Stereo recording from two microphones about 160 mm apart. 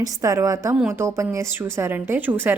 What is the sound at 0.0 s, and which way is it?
A woman's voice, 20° right (ahead or behind).